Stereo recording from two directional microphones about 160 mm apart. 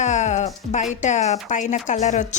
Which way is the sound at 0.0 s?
50° left (ahead or behind).